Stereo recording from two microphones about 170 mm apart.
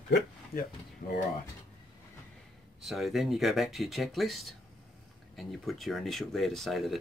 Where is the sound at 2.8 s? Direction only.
Centre (ahead or behind).